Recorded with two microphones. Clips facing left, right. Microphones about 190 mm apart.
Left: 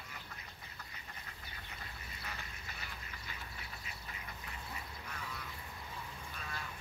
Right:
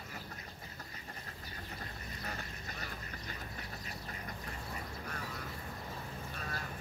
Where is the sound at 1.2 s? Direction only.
40° right (ahead or behind).